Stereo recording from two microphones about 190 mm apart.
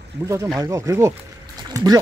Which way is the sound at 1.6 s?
20° right (ahead or behind).